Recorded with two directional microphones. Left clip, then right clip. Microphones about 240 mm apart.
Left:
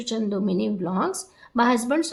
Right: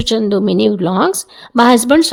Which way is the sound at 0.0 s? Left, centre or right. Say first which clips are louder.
Right 13 dB; right.